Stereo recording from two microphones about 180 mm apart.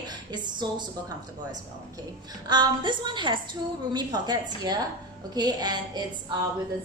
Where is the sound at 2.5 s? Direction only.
25° right (ahead or behind).